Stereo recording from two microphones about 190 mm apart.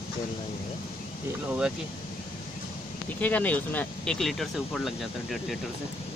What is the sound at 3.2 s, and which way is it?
Speech, 10° left (ahead or behind).